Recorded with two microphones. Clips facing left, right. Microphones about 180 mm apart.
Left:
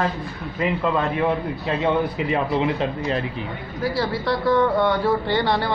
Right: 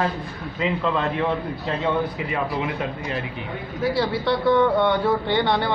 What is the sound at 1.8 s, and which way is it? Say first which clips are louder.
Speech: left 3 dB; 25° left (ahead or behind).